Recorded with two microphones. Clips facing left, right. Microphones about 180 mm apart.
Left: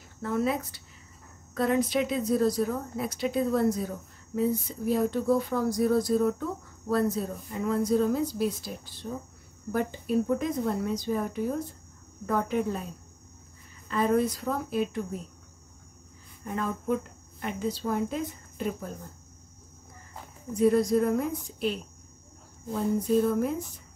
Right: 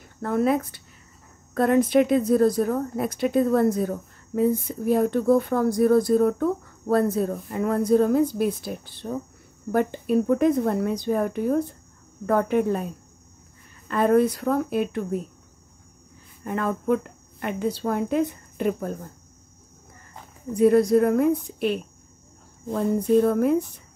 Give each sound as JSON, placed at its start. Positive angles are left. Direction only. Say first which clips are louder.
{"t": 0.2, "sound": "speech", "louder": "right 6 dB", "side_deg": -55}
{"t": 13.8, "sound": "speech", "louder": "right 6 dB", "side_deg": -60}
{"t": 16.4, "sound": "speech", "louder": "right 6 dB", "side_deg": -65}
{"t": 20.5, "sound": "speech", "louder": "right 5 dB", "side_deg": -65}